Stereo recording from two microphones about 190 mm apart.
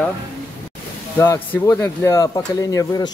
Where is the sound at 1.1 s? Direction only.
10° left (ahead or behind).